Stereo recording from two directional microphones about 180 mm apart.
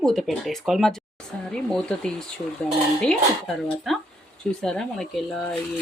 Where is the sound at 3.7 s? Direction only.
Centre (ahead or behind).